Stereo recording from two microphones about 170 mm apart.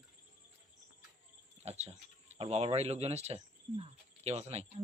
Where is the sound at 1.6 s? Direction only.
40° right (ahead or behind).